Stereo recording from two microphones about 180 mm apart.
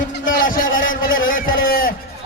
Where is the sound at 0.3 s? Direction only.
50° left (ahead or behind).